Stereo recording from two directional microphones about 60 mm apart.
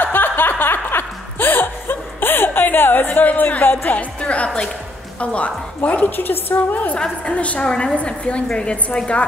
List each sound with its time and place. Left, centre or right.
0.0 s chuckle: left
5.2 s a woman's voice: left
7.0 s a woman's voice: left